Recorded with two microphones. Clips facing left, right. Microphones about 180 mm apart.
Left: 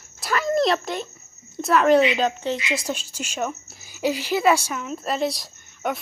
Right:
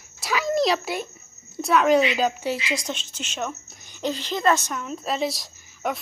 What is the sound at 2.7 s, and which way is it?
A woman's voice, 5° left (ahead or behind).